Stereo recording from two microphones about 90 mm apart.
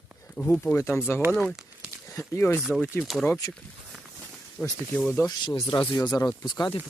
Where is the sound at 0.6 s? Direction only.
30° left (ahead or behind).